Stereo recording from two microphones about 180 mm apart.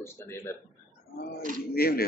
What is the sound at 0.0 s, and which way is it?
Speech, 15° left (ahead or behind).